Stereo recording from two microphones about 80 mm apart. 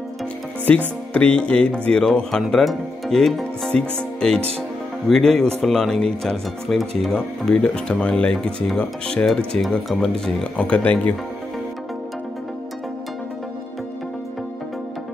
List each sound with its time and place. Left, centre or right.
0.7 s speech: centre